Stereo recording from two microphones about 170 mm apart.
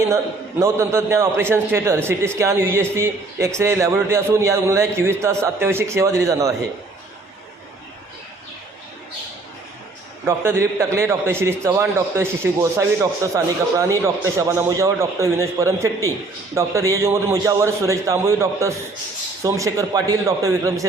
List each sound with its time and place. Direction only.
0.6 s a man's voice: 15° right (ahead or behind)
10.2 s a man's voice: 15° right (ahead or behind)